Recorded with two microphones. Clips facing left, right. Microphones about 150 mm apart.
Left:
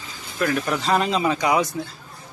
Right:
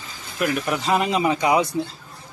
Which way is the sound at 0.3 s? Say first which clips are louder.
Even; 15° right (ahead or behind).